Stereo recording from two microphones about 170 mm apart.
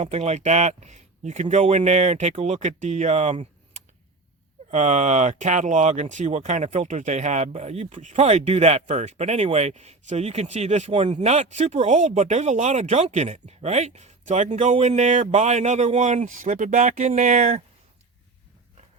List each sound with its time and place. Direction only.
0.0 s speech: 40° right (ahead or behind)
4.7 s speech: 45° right (ahead or behind)